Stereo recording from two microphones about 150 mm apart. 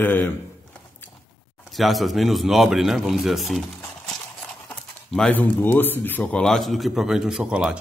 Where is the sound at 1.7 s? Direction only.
Centre (ahead or behind).